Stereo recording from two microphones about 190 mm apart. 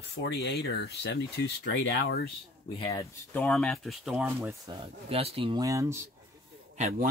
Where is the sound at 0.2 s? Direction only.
60° left (ahead or behind).